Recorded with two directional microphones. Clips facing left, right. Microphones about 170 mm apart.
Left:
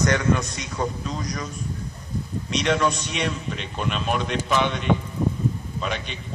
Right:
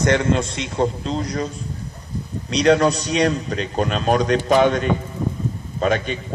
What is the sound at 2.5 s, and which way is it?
A man's voice, 35° right (ahead or behind).